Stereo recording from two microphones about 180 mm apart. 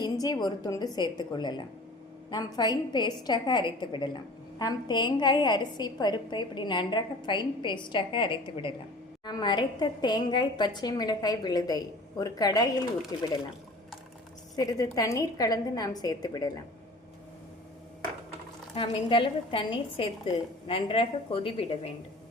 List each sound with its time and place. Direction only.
0.0 s a woman's voice: 20° left (ahead or behind)
14.5 s a woman's voice: 20° left (ahead or behind)
18.7 s a woman's voice: 30° left (ahead or behind)